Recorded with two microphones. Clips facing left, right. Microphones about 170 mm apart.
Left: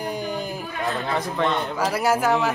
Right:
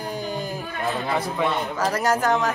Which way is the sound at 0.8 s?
Centre (ahead or behind).